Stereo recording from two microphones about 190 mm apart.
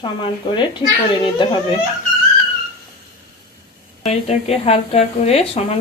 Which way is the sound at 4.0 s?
35° left (ahead or behind).